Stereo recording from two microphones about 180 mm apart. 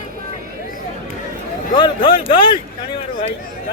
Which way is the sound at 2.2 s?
30° left (ahead or behind).